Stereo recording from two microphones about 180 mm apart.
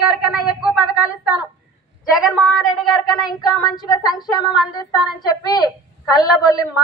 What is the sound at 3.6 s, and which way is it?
Speech, 25° left (ahead or behind).